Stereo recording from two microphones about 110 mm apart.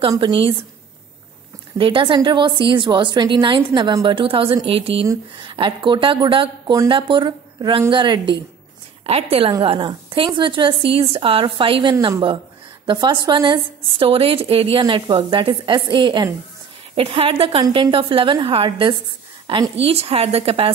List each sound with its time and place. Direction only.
0.2 s a woman's voice: 50° right (ahead or behind)
1.8 s a woman's voice: 50° right (ahead or behind)
5.4 s a woman's voice: 45° right (ahead or behind)
9.0 s a woman's voice: 65° right (ahead or behind)
9.6 s a woman's voice: 50° right (ahead or behind)
16.9 s a woman's voice: 55° right (ahead or behind)
19.8 s a woman's voice: 65° right (ahead or behind)